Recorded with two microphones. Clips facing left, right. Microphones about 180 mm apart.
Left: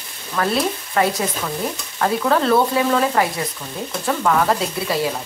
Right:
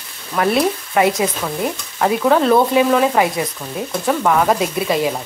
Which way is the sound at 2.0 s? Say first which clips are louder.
Right 4 dB; 15° right (ahead or behind).